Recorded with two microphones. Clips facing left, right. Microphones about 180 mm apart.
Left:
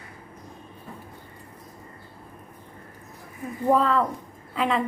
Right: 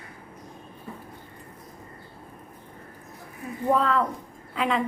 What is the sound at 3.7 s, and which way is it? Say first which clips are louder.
Speech: left 2 dB; centre (ahead or behind).